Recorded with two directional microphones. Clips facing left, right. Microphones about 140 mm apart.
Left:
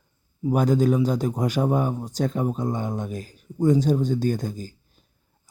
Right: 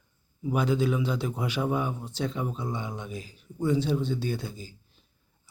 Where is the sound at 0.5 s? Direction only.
45° left (ahead or behind).